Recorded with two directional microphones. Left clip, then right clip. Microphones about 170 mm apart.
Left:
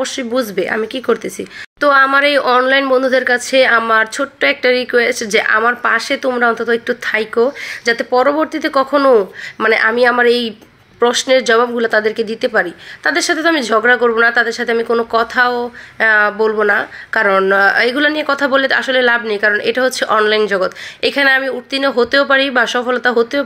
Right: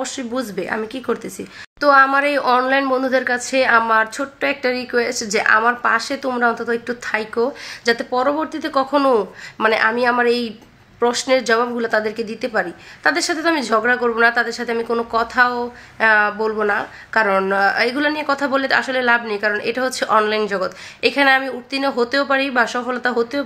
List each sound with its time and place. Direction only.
0.0 s speech: 15° left (ahead or behind)